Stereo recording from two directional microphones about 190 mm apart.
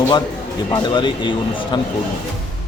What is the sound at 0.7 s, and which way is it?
Speech, 25° left (ahead or behind).